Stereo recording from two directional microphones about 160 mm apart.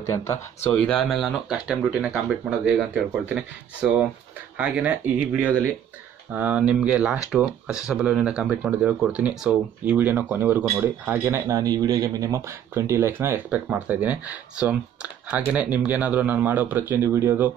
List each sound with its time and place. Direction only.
0.0 s speech: 20° left (ahead or behind); by 17.5 s 15° right (ahead or behind)